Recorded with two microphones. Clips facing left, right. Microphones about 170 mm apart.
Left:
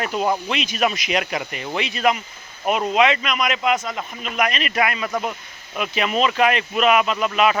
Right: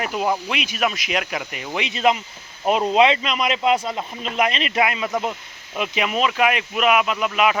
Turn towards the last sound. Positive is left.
turn(degrees=-10)  # may be behind; listen again after turning